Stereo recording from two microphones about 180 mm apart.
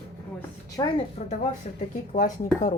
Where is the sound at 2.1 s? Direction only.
45° left (ahead or behind).